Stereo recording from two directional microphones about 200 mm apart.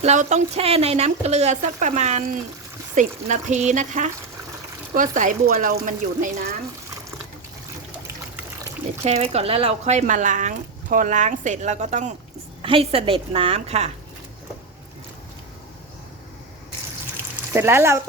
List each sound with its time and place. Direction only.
0.0 s speech: 35° right (ahead or behind)
9.0 s a woman's voice: 30° right (ahead or behind)
17.5 s speech: 10° right (ahead or behind)